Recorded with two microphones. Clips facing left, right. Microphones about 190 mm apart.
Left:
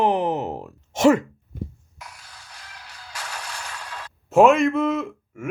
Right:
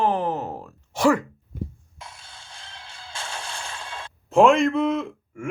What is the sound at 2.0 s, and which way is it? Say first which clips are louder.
Music: even; 25° right (ahead or behind).